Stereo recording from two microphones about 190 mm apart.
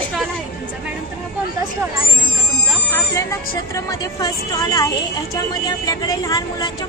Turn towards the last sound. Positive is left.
turn(degrees=20)  # may be behind; listen again after turning